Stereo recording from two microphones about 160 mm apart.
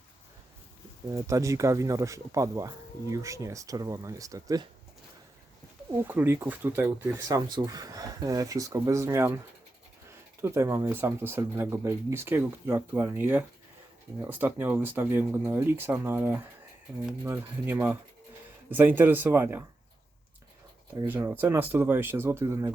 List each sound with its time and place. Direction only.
1.1 s speech: 20° right (ahead or behind)
5.9 s speech: 15° right (ahead or behind)
10.4 s speech: 15° right (ahead or behind)
21.1 s speech: 10° right (ahead or behind)